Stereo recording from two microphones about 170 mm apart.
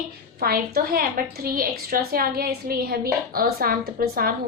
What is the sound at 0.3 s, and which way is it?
A woman's voice, 65° right (ahead or behind).